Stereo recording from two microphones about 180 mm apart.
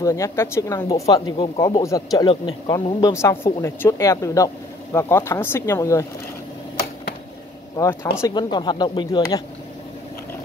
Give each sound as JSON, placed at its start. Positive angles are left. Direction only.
{"t": 0.0, "sound": "speech", "side_deg": 15}
{"t": 7.7, "sound": "speech", "side_deg": 15}